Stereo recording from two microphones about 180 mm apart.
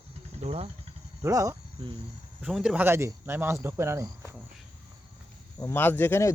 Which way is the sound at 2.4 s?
5° right (ahead or behind).